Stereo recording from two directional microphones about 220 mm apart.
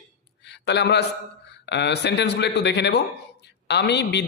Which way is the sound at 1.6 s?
50° left (ahead or behind).